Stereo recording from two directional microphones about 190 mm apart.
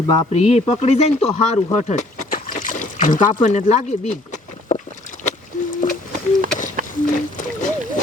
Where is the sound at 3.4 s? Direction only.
40° left (ahead or behind).